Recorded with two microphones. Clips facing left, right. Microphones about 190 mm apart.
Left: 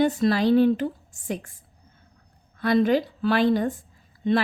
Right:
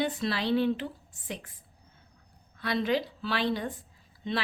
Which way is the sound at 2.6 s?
50° left (ahead or behind).